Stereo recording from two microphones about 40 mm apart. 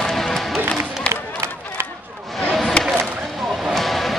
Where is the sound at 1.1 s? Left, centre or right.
Left.